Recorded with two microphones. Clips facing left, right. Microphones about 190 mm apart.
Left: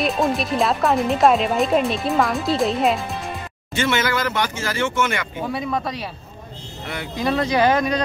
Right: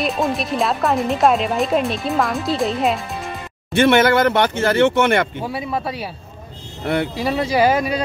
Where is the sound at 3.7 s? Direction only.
60° right (ahead or behind).